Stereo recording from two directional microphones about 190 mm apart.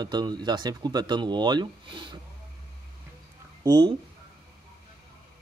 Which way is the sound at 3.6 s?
20° right (ahead or behind).